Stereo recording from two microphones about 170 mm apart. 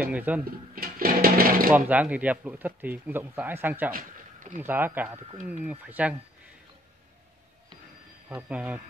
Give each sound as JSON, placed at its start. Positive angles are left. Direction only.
{"t": 0.0, "sound": "speech", "side_deg": -10}
{"t": 0.7, "sound": "speech", "side_deg": -60}
{"t": 1.9, "sound": "speech", "side_deg": -10}
{"t": 3.9, "sound": "a sound", "side_deg": -50}
{"t": 4.6, "sound": "speech", "side_deg": -10}
{"t": 8.4, "sound": "speech", "side_deg": -10}